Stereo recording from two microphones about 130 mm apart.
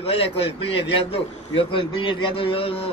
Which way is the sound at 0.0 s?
45° left (ahead or behind).